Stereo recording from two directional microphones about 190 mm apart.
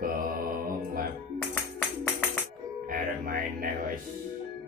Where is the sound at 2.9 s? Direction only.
50° right (ahead or behind).